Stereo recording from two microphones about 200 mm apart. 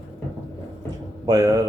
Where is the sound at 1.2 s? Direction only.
20° right (ahead or behind).